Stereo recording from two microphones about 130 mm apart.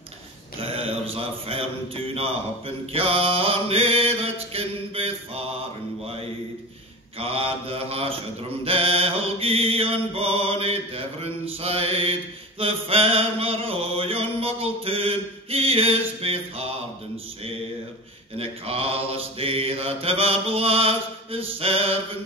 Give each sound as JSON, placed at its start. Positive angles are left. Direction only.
{"t": 0.6, "sound": "mantra", "side_deg": -45}
{"t": 2.9, "sound": "mantra", "side_deg": -50}
{"t": 7.2, "sound": "mantra", "side_deg": -50}
{"t": 18.4, "sound": "mantra", "side_deg": -50}